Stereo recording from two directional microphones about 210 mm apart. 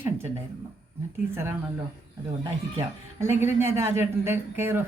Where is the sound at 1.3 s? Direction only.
10° right (ahead or behind).